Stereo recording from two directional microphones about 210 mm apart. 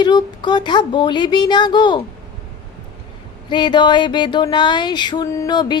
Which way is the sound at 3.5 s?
20° left (ahead or behind).